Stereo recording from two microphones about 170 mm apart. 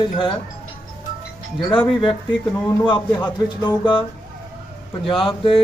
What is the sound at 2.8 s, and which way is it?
Speech, 25° left (ahead or behind).